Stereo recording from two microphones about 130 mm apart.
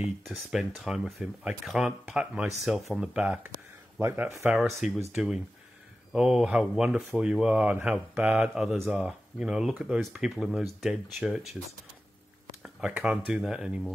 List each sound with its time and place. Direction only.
0.0 s speech: 5° right (ahead or behind)
4.5 s speech: centre (ahead or behind)
12.6 s speech: 5° right (ahead or behind)